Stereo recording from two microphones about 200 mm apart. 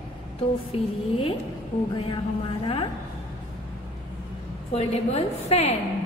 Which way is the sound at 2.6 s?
25° left (ahead or behind).